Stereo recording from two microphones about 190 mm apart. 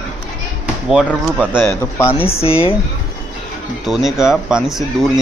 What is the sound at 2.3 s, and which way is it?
Speech, 30° left (ahead or behind).